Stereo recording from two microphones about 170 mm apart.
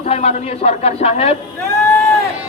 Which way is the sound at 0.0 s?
40° left (ahead or behind).